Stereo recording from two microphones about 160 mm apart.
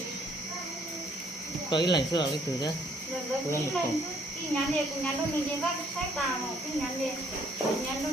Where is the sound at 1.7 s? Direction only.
25° left (ahead or behind).